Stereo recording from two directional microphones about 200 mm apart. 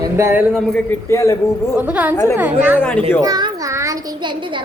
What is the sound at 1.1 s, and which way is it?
Speech, 15° left (ahead or behind).